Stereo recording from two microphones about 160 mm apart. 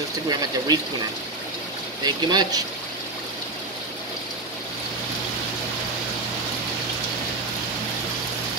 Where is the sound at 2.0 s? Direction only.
25° right (ahead or behind).